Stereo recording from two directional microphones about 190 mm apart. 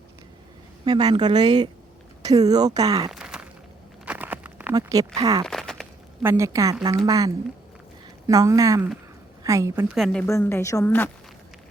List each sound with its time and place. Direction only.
0.9 s a woman's voice: 25° right (ahead or behind)
3.1 s a sound: 5° right (ahead or behind)
4.7 s a woman's voice: 20° right (ahead or behind)
5.5 s a sound: centre (ahead or behind)
6.2 s a woman's voice: 15° right (ahead or behind)
9.9 s a woman's voice: 5° left (ahead or behind)
10.2 s a woman's voice: 15° left (ahead or behind)